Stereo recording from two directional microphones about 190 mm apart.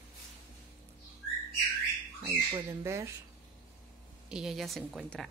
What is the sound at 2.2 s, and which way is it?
Speech, 15° right (ahead or behind).